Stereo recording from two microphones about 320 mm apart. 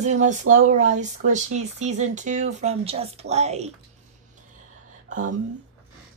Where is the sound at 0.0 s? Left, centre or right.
Right.